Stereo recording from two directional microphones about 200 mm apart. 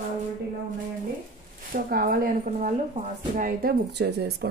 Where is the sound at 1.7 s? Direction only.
45° right (ahead or behind).